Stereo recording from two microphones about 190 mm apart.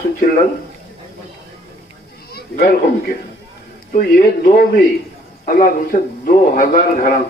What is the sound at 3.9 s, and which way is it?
A man's voice, 50° left (ahead or behind).